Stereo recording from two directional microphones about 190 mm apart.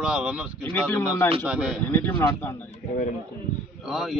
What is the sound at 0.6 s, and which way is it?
Speech, 10° left (ahead or behind).